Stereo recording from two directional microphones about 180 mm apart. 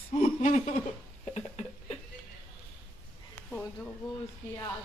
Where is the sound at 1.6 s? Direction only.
40° left (ahead or behind).